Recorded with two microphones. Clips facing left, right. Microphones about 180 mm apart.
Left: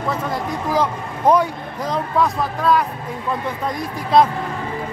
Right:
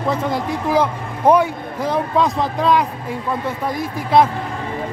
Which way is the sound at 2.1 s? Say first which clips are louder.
Even; 20° right (ahead or behind).